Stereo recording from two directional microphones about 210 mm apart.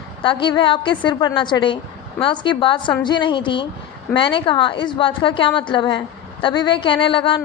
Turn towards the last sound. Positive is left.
turn(degrees=25)  # may be behind; listen again after turning